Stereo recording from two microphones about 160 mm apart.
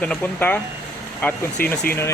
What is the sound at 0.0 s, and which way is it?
Speech, 10° left (ahead or behind).